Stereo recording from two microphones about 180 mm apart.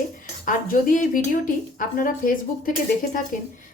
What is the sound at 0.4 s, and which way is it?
Speech, 50° left (ahead or behind).